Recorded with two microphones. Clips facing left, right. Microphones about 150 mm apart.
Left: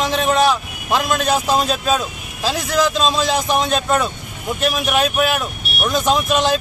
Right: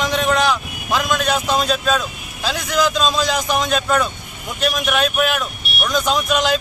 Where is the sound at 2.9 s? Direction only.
Centre (ahead or behind).